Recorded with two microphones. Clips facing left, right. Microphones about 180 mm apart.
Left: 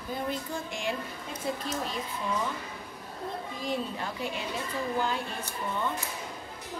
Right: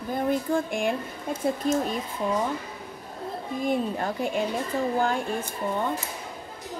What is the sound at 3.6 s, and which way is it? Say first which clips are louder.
Speech: right 7 dB; 50° right (ahead or behind).